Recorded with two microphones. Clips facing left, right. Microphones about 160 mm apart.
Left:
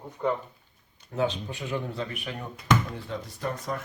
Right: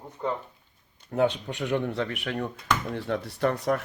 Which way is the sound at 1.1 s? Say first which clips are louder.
Right 4 dB; 65° right (ahead or behind).